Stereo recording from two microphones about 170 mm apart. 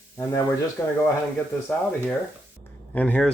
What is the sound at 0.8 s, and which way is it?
Speech, 10° left (ahead or behind).